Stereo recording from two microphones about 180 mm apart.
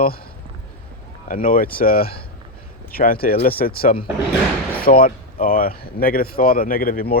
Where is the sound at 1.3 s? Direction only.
50° left (ahead or behind).